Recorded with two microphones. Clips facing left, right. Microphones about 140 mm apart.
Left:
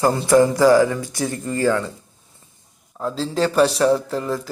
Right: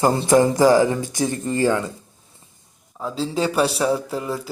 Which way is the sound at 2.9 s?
Centre (ahead or behind).